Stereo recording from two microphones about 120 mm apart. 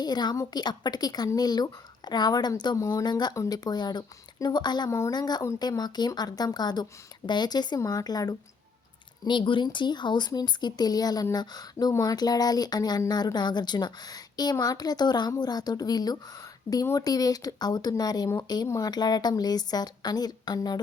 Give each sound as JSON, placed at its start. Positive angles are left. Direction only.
{"t": 0.0, "sound": "speech", "side_deg": 35}
{"t": 4.9, "sound": "speech", "side_deg": 25}